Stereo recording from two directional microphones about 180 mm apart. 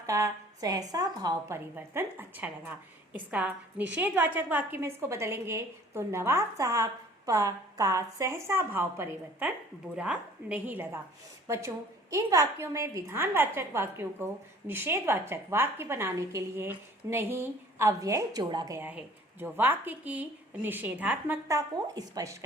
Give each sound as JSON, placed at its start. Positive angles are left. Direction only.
{"t": 0.0, "sound": "a woman's voice", "side_deg": -15}